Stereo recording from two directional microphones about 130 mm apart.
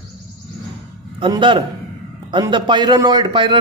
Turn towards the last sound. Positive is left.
turn(degrees=-40)  # may be behind; listen again after turning